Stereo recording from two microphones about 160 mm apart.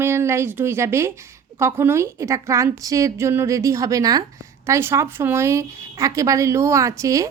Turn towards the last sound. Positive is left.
turn(degrees=-20)  # may be behind; listen again after turning